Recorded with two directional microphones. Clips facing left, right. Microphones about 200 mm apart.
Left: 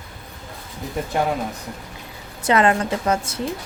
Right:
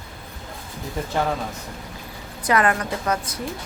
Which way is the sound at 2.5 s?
25° left (ahead or behind).